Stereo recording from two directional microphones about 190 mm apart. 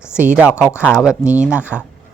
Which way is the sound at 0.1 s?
5° right (ahead or behind).